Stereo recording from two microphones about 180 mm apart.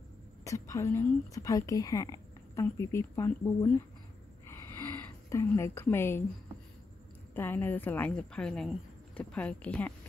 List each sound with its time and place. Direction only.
0.4 s a woman's voice: 15° left (ahead or behind)
4.5 s a sound: 15° left (ahead or behind)
7.3 s a woman's voice: 10° left (ahead or behind)